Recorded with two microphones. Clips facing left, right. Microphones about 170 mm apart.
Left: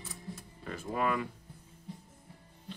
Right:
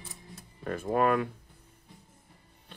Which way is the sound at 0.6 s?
55° right (ahead or behind).